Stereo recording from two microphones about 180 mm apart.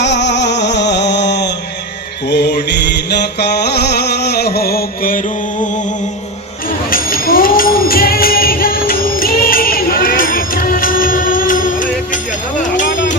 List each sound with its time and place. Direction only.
0.0 s music: 75° left (ahead or behind)
2.3 s mantra: 70° left (ahead or behind)
6.9 s music: 55° left (ahead or behind)
12.7 s a sound: 45° left (ahead or behind)